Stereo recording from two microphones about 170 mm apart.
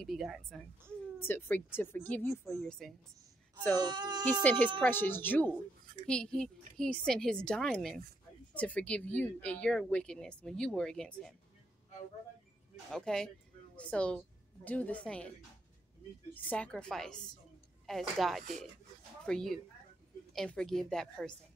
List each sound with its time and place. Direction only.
0.0 s a woman's voice: centre (ahead or behind)
1.2 s speech: 10° left (ahead or behind)
2.5 s a woman's voice: centre (ahead or behind)
3.8 s speech: 25° right (ahead or behind)
4.4 s a woman's voice: 10° left (ahead or behind)
12.9 s a woman's voice: 5° left (ahead or behind)
16.3 s a woman's voice: 10° left (ahead or behind)